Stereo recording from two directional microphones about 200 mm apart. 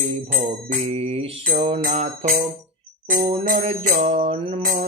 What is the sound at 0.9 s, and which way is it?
Mantra, 30° right (ahead or behind).